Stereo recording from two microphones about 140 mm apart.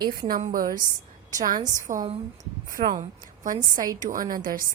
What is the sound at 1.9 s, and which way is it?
Speech, 70° right (ahead or behind).